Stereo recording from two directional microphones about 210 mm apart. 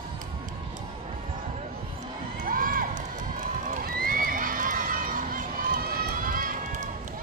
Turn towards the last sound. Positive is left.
turn(degrees=-40)  # may be behind; listen again after turning